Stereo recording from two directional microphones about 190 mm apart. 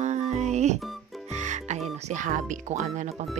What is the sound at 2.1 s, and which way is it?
Speech, 45° right (ahead or behind).